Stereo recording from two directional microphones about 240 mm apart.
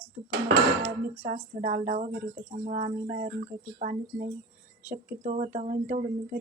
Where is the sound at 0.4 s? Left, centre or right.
Right.